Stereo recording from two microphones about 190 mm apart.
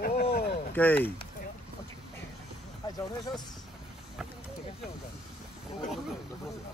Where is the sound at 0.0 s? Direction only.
50° left (ahead or behind).